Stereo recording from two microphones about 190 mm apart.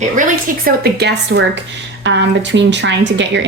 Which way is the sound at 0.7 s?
55° right (ahead or behind).